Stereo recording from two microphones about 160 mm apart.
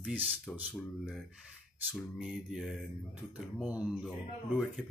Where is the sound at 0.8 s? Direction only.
5° left (ahead or behind).